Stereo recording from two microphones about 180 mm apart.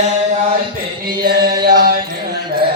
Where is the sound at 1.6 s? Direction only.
60° right (ahead or behind).